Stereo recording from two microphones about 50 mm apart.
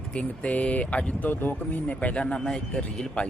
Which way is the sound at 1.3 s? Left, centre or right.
Left.